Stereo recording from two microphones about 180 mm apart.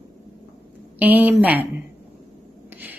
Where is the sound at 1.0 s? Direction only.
10° right (ahead or behind).